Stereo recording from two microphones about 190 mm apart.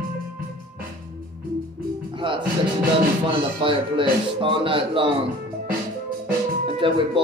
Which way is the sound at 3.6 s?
25° right (ahead or behind).